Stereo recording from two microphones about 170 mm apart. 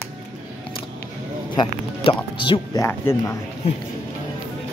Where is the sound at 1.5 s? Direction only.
30° left (ahead or behind).